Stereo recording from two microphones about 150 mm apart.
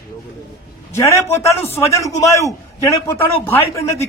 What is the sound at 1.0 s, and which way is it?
A man's voice, 20° left (ahead or behind).